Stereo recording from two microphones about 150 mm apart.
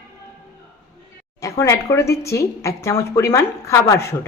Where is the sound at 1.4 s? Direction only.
20° left (ahead or behind).